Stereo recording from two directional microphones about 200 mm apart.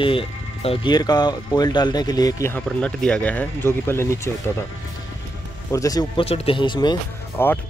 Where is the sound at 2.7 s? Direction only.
5° left (ahead or behind).